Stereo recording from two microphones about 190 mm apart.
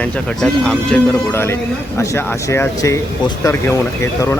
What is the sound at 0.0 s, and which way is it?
Speech, 5° left (ahead or behind).